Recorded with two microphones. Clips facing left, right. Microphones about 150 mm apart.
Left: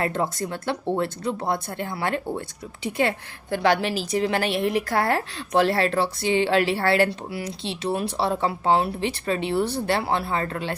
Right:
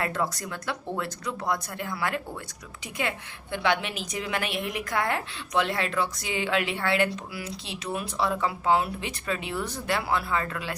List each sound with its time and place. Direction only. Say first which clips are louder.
0.0 s a woman's voice: left 4 dB; 25° left (ahead or behind)